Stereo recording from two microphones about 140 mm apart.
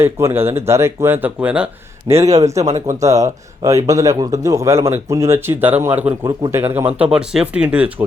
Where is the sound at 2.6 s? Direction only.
55° right (ahead or behind).